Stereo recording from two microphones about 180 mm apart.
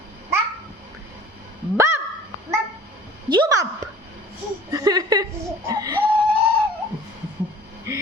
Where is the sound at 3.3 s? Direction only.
20° right (ahead or behind).